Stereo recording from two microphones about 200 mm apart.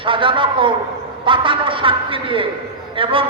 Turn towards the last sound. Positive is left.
turn(degrees=-25)  # may be behind; listen again after turning